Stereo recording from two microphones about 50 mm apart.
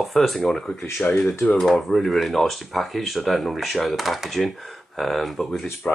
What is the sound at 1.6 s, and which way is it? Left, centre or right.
Speech, centre.